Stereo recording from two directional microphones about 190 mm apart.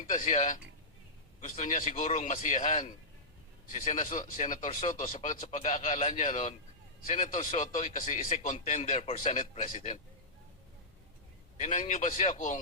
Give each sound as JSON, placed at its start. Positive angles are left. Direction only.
{"t": 0.0, "sound": "speech", "side_deg": 40}
{"t": 11.6, "sound": "speech", "side_deg": 35}